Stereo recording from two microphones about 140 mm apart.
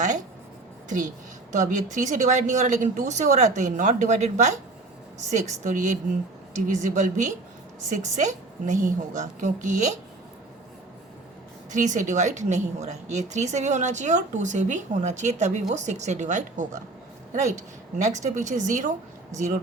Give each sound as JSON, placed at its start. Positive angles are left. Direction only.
{"t": 0.9, "sound": "a woman's voice", "side_deg": -65}
{"t": 11.7, "sound": "speech", "side_deg": -60}